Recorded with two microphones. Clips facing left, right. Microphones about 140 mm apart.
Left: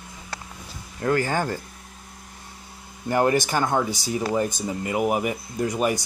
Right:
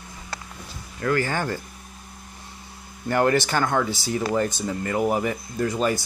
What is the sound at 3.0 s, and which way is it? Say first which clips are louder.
Speech: even; 20° left (ahead or behind).